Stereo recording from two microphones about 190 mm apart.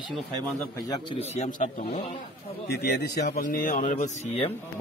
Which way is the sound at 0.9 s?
30° left (ahead or behind).